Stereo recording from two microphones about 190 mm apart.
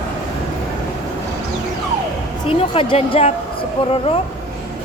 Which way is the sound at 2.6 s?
30° left (ahead or behind).